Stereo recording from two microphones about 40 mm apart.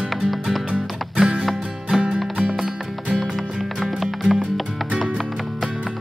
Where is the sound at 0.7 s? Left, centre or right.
Right.